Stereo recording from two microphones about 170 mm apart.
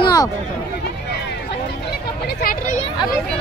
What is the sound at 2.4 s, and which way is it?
Speech, 55° left (ahead or behind).